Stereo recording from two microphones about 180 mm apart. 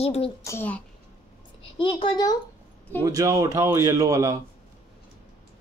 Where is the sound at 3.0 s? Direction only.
20° right (ahead or behind).